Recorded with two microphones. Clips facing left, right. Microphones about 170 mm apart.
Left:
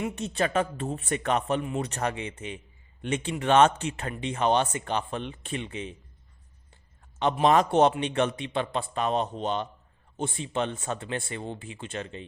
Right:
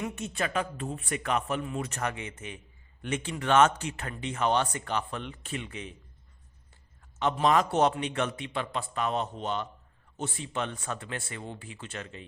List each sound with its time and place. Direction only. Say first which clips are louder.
0.0 s a man's voice: left 4 dB; 35° left (ahead or behind)
7.4 s speech: left 4 dB; 25° left (ahead or behind)